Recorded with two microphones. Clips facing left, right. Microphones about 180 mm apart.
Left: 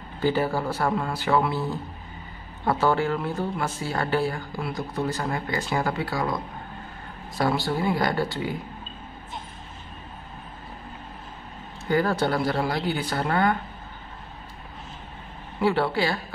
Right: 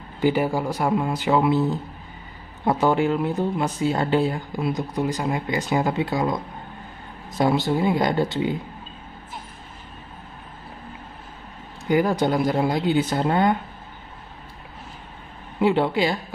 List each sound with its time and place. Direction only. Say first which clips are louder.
0.2 s speech: right 3 dB; 15° right (ahead or behind)
11.8 s speech: right 3 dB; 15° right (ahead or behind)
15.6 s speech: right 3 dB; 20° right (ahead or behind)